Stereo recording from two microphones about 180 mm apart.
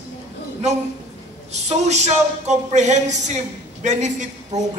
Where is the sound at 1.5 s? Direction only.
40° right (ahead or behind).